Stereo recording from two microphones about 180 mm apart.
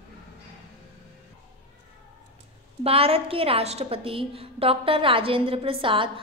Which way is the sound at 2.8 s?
30° right (ahead or behind).